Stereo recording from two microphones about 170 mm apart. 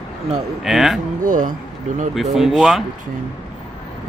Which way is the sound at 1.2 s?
50° right (ahead or behind).